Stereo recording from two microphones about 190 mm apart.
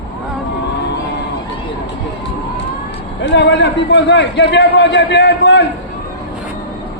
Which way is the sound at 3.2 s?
65° left (ahead or behind).